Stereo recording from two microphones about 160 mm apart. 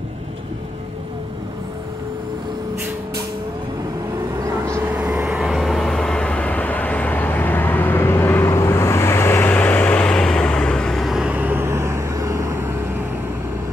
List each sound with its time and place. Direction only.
4.6 s vehicle: 15° right (ahead or behind)